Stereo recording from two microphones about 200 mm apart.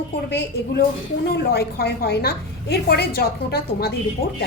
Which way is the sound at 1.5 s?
55° left (ahead or behind).